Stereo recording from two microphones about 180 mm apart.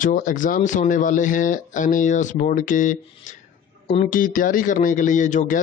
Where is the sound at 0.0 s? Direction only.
50° left (ahead or behind).